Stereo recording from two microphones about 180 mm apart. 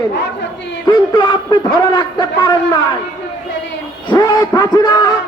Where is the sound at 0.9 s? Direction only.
25° left (ahead or behind).